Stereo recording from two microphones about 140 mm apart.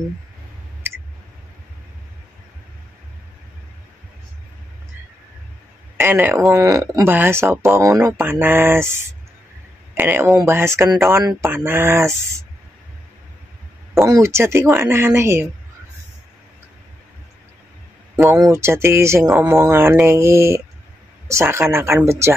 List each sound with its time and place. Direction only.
0.8 s clicking: 15° right (ahead or behind)
5.9 s a woman's voice: 15° right (ahead or behind)
14.0 s a woman's voice: 20° right (ahead or behind)
18.1 s a woman's voice: 15° right (ahead or behind)
19.3 s speech: 5° right (ahead or behind)
19.6 s a woman's voice: 20° right (ahead or behind)